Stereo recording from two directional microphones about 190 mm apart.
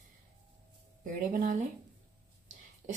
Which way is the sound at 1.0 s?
45° right (ahead or behind).